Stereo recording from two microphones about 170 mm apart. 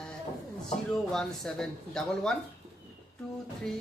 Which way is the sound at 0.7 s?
5° left (ahead or behind).